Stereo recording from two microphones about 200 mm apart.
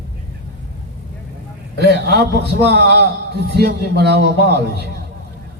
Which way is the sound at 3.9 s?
55° right (ahead or behind).